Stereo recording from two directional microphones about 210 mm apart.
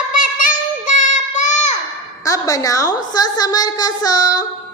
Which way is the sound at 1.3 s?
35° left (ahead or behind).